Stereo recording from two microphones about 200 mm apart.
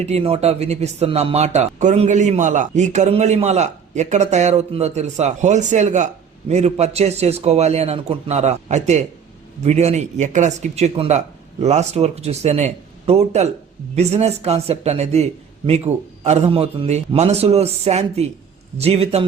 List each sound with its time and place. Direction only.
0.0 s a man's voice: 30° right (ahead or behind)